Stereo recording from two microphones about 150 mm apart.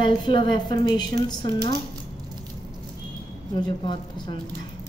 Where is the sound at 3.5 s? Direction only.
30° left (ahead or behind).